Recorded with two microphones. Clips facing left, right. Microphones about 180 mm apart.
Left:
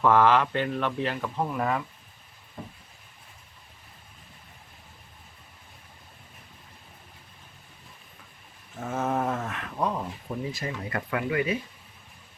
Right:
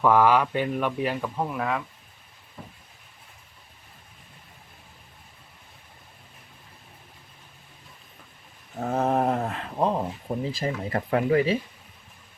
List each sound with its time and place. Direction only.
0.0 s speech: 10° right (ahead or behind)
8.7 s speech: 35° right (ahead or behind)